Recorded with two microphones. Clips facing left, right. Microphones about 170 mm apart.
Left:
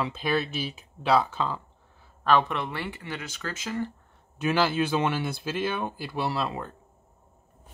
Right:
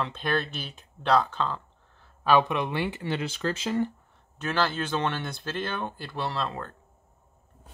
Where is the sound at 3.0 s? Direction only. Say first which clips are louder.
Right 7 dB; 30° right (ahead or behind).